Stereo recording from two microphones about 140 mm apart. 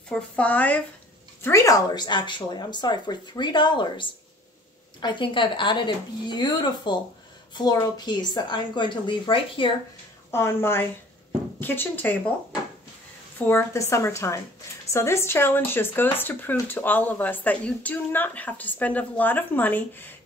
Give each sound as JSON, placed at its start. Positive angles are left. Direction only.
{"t": 0.1, "sound": "a woman's voice", "side_deg": 10}
{"t": 1.4, "sound": "speech", "side_deg": 20}
{"t": 10.3, "sound": "a woman's voice", "side_deg": 15}
{"t": 13.5, "sound": "a woman's voice", "side_deg": 20}